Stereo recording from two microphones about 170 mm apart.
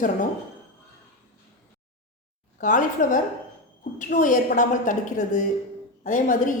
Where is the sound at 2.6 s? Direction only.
50° left (ahead or behind).